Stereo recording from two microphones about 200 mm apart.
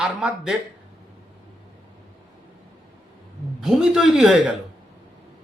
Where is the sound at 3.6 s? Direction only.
5° right (ahead or behind).